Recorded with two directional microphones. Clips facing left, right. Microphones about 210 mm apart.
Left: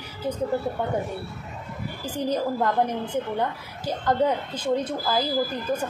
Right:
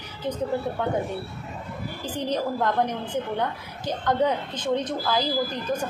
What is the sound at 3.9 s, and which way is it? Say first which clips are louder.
A woman's voice: left 1 dB; 10° left (ahead or behind).